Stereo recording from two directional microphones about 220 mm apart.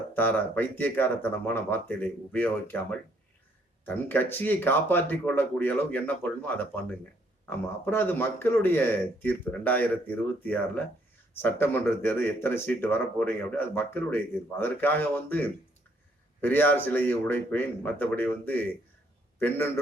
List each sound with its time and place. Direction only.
0.1 s speech: 10° left (ahead or behind)
3.8 s speech: 10° left (ahead or behind)
7.9 s speech: 10° left (ahead or behind)